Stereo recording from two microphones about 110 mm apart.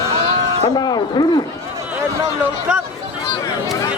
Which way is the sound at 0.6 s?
40° left (ahead or behind).